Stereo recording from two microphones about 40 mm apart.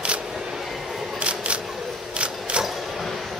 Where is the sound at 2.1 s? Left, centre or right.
Right.